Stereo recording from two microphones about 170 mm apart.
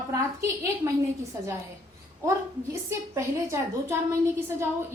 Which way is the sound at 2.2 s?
20° right (ahead or behind).